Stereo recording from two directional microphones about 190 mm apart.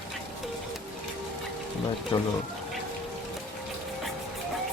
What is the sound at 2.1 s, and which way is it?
Speech, 25° left (ahead or behind).